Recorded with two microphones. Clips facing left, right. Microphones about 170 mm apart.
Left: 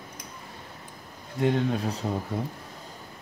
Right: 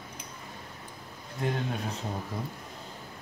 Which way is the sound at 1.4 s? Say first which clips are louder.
Left 7 dB; 30° left (ahead or behind).